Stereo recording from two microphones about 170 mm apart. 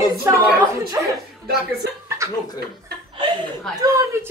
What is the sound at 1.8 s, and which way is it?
Speech, 70° right (ahead or behind).